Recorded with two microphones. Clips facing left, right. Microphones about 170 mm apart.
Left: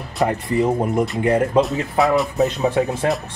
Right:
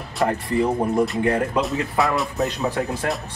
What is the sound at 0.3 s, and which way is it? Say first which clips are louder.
Speech: left 2 dB; 20° left (ahead or behind).